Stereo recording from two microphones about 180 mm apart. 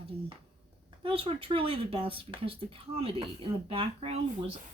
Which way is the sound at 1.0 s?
30° right (ahead or behind).